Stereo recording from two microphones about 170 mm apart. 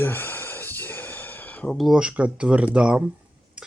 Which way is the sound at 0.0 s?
10° left (ahead or behind).